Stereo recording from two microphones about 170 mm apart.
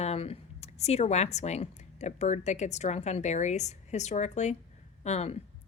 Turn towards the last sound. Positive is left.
turn(degrees=40)  # may be behind; listen again after turning